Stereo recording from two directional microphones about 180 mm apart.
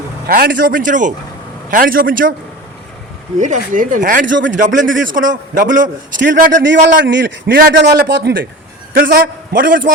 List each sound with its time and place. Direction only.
0.3 s a man's voice: 55° right (ahead or behind)
3.3 s a man's voice: 45° right (ahead or behind)
4.3 s a man's voice: 90° right
4.5 s a man's voice: 45° right (ahead or behind)
6.6 s a man's voice: 80° right; by 9.9 s 50° right (ahead or behind)